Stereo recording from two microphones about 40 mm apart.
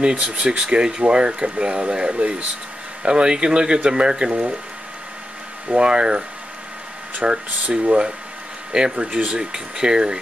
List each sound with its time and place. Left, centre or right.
0.0 s speech: right
4.3 s speech: right
5.7 s speech: right